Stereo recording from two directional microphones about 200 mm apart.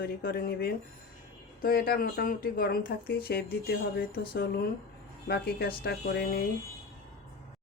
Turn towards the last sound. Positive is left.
turn(degrees=50)  # may be behind; listen again after turning